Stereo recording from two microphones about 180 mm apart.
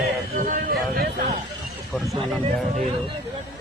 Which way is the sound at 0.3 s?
50° right (ahead or behind).